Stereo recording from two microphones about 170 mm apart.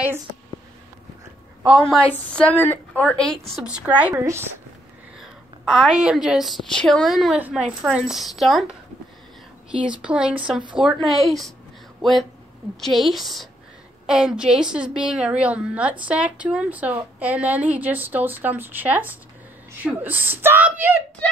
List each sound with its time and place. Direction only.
1.6 s a woman's voice: centre (ahead or behind)
2.1 s a woman's voice: 10° left (ahead or behind)
3.5 s a woman's voice: 5° right (ahead or behind)
5.2 s a woman's voice: centre (ahead or behind)
21.2 s a woman's voice: 10° left (ahead or behind)